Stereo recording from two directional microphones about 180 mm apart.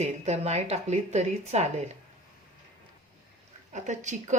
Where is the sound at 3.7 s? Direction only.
40° right (ahead or behind).